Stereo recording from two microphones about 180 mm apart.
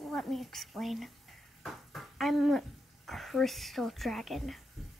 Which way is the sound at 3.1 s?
Centre (ahead or behind).